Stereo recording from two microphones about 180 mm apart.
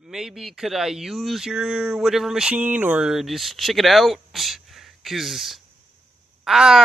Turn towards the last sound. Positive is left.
turn(degrees=0)  # may be behind; listen again after turning